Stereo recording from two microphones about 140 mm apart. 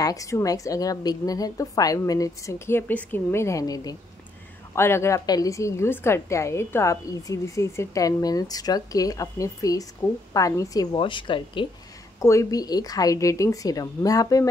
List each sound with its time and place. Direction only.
0.0 s a woman's voice: 25° left (ahead or behind)
11.0 s speech: 35° left (ahead or behind)
12.2 s a woman's voice: 20° left (ahead or behind)